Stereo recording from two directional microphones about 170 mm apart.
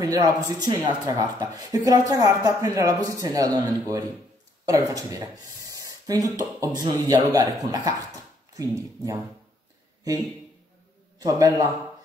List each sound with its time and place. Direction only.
0.0 s speech: 20° right (ahead or behind)
11.1 s a man's voice: 20° right (ahead or behind)